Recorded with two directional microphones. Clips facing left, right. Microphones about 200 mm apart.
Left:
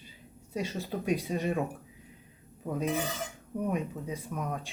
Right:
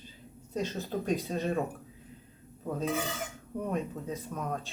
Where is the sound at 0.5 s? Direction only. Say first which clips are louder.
Right 1 dB; 10° left (ahead or behind).